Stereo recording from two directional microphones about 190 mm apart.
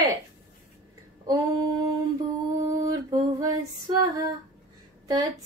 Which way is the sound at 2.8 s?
20° right (ahead or behind).